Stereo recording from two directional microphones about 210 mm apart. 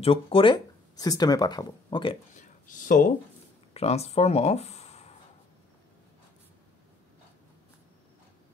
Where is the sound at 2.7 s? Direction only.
40° left (ahead or behind).